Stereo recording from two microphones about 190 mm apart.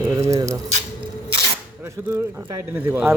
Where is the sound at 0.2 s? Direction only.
15° right (ahead or behind).